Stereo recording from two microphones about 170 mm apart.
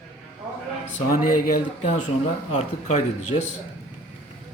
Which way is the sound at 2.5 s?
40° left (ahead or behind).